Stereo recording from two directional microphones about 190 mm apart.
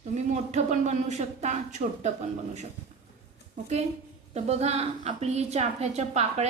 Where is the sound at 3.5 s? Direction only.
35° right (ahead or behind).